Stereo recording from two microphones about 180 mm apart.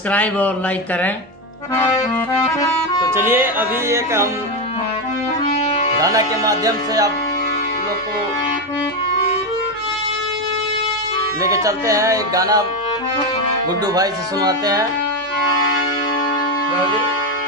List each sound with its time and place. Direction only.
0.1 s speech: 10° left (ahead or behind)
2.4 s music: 20° left (ahead or behind)
3.2 s speech: 10° right (ahead or behind)
5.6 s music: 35° left (ahead or behind)
6.0 s speech: 20° right (ahead or behind)
11.4 s speech: 20° right (ahead or behind)
13.8 s speech: 20° right (ahead or behind)